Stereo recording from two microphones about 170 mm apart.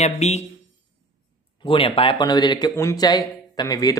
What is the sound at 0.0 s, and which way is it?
Speech, 40° left (ahead or behind).